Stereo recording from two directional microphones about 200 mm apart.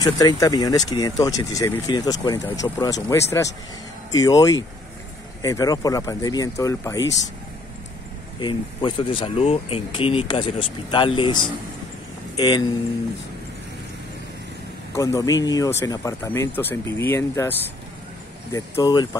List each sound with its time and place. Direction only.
0.0 s speech: 20° left (ahead or behind)
8.4 s speech: 25° left (ahead or behind)
15.0 s speech: 15° left (ahead or behind)